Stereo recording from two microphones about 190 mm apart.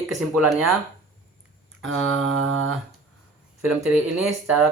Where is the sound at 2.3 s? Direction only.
90° right.